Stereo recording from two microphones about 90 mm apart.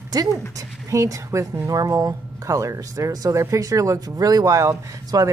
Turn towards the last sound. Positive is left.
turn(degrees=-40)  # may be behind; listen again after turning